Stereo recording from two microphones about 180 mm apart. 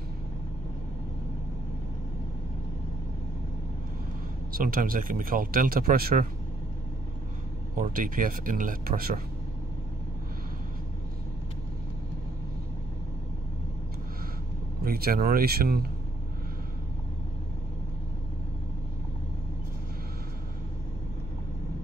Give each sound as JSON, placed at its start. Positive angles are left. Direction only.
{"t": 4.5, "sound": "speech", "side_deg": -55}
{"t": 7.7, "sound": "speech", "side_deg": -50}
{"t": 14.9, "sound": "speech", "side_deg": -55}